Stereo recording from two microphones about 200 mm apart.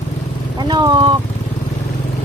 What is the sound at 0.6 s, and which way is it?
Speech, 20° right (ahead or behind).